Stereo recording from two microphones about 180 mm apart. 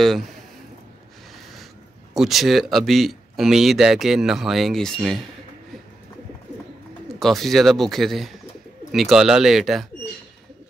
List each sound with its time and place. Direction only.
2.1 s speech: centre (ahead or behind)
7.2 s speech: centre (ahead or behind)